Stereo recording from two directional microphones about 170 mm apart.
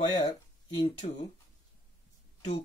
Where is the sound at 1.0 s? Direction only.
40° left (ahead or behind).